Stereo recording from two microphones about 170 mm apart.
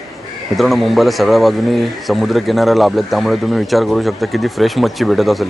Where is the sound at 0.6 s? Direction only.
Centre (ahead or behind).